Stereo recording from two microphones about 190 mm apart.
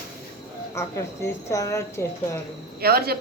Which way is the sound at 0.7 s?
15° left (ahead or behind).